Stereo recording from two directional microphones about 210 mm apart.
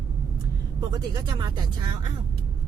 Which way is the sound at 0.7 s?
20° right (ahead or behind).